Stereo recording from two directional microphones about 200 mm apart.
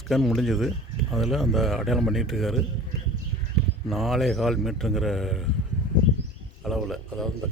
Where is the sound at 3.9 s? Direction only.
Centre (ahead or behind).